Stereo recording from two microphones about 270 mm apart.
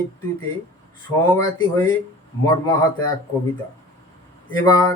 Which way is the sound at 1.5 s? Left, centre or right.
Centre.